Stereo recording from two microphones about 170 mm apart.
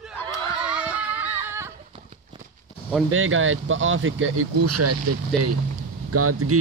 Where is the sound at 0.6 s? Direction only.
10° right (ahead or behind).